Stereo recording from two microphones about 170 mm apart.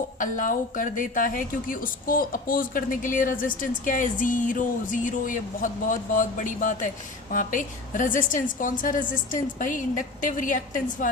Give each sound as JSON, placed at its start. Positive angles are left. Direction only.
{"t": 0.2, "sound": "a woman's voice", "side_deg": 50}